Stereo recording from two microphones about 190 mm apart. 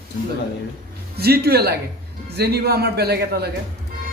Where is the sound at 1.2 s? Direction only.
55° right (ahead or behind).